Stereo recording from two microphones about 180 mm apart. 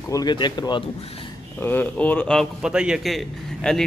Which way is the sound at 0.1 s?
25° left (ahead or behind).